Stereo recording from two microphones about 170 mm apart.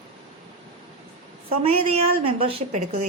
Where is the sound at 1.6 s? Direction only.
35° right (ahead or behind).